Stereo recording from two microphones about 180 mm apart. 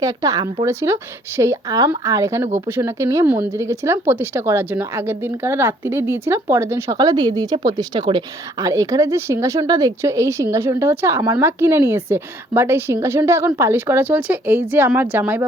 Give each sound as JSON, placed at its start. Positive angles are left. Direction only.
{"t": 0.0, "sound": "speech", "side_deg": -20}